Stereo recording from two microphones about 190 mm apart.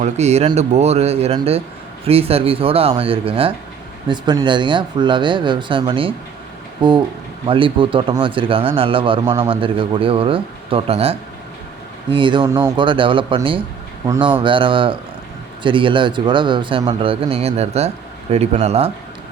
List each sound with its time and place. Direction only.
0.0 s speech: 35° right (ahead or behind)